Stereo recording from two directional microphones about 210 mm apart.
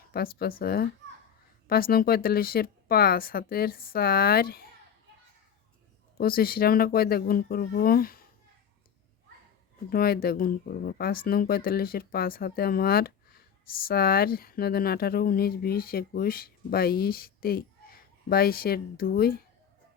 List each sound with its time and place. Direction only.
0.1 s speech: 45° left (ahead or behind)
6.1 s speech: 45° left (ahead or behind)
9.9 s speech: 45° left (ahead or behind)